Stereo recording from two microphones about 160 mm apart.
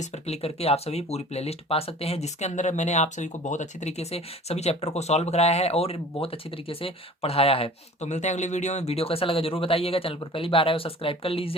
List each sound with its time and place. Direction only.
0.0 s speech: 40° left (ahead or behind)